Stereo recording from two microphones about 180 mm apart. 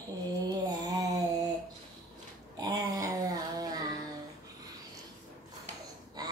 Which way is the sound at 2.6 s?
20° right (ahead or behind).